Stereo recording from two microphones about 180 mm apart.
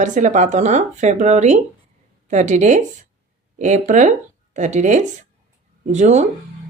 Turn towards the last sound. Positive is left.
turn(degrees=-40)  # may be behind; listen again after turning